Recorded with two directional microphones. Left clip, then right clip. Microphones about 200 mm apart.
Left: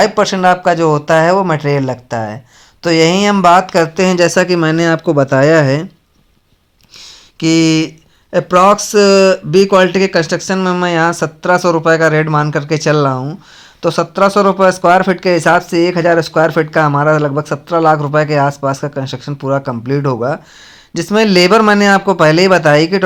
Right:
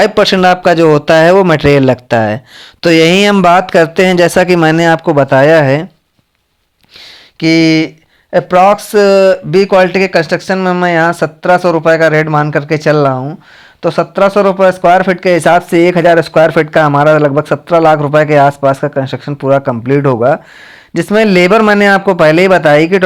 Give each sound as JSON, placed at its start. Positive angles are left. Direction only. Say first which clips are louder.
{"t": 0.0, "sound": "speech", "louder": "right 3 dB", "side_deg": -40}
{"t": 7.3, "sound": "speech", "louder": "right 3 dB", "side_deg": -30}
{"t": 15.4, "sound": "speech", "louder": "right 3 dB", "side_deg": -35}